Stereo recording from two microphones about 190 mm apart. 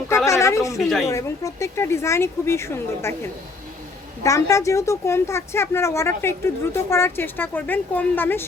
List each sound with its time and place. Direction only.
0.3 s a woman's voice: 15° left (ahead or behind)
0.8 s speech: centre (ahead or behind)
1.0 s a woman's voice: 15° left (ahead or behind)
4.2 s a woman's voice: 15° left (ahead or behind)